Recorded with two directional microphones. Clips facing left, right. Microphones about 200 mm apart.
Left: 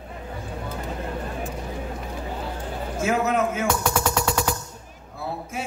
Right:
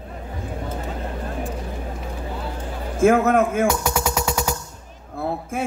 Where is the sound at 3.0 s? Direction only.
55° right (ahead or behind).